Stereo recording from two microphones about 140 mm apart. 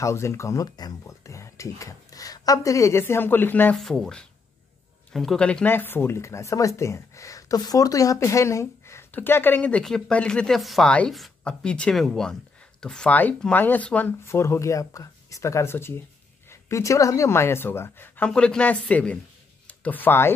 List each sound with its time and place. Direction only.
0.0 s speech: 20° left (ahead or behind)